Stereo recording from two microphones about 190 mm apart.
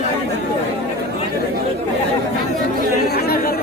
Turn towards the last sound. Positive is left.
turn(degrees=55)  # may be behind; listen again after turning